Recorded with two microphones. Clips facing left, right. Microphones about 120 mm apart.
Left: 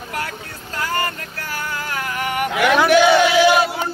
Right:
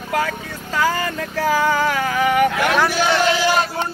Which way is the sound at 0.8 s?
90° right.